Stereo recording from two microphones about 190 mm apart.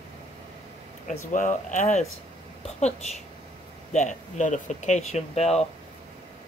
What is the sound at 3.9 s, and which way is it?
Speech, 40° left (ahead or behind).